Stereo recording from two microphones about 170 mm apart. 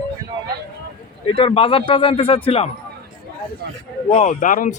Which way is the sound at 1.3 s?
30° left (ahead or behind).